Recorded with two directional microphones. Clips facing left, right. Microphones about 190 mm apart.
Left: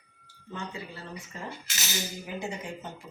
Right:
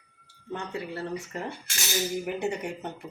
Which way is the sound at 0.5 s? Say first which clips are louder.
Right 5 dB; 65° right (ahead or behind).